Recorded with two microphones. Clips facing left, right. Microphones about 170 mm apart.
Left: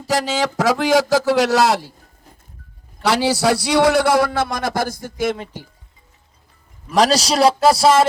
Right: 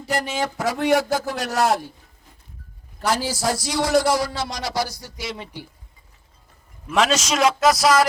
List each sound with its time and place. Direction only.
0.1 s a man's voice: 90° left
3.0 s a man's voice: 75° left (ahead or behind); by 5.6 s 50° left (ahead or behind)
6.9 s a man's voice: 35° left (ahead or behind)